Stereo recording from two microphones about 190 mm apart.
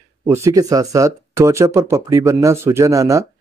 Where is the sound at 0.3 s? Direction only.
15° right (ahead or behind).